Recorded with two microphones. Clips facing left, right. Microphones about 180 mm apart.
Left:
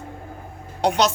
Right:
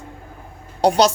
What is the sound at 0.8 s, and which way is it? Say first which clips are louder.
Speech: right 4 dB; 35° right (ahead or behind).